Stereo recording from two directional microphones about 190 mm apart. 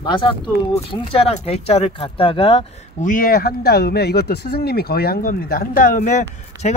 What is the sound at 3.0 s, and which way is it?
Speech, 45° left (ahead or behind).